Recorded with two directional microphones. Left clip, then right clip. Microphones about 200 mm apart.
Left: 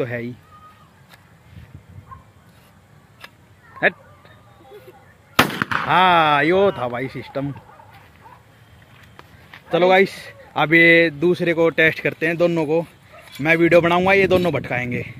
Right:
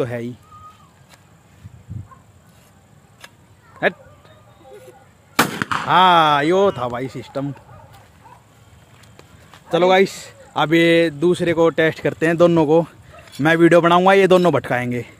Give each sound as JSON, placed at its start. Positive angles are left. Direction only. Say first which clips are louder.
{"t": 0.0, "sound": "speech", "louder": "right 1 dB", "side_deg": -15}
{"t": 5.9, "sound": "speech", "louder": "right 2 dB", "side_deg": -10}
{"t": 9.7, "sound": "speech", "louder": "even", "side_deg": -10}
{"t": 12.2, "sound": "a man's voice", "louder": "right 8 dB", "side_deg": -35}